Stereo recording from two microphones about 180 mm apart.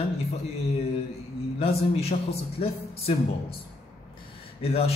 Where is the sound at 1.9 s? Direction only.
35° left (ahead or behind).